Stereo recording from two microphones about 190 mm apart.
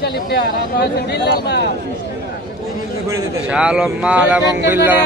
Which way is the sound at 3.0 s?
15° right (ahead or behind).